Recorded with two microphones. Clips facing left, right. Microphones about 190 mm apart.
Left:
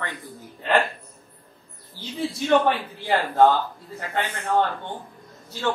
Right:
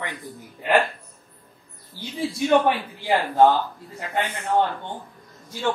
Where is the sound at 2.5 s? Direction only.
10° right (ahead or behind).